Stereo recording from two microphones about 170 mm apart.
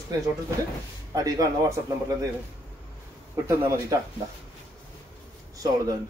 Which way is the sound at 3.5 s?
20° right (ahead or behind).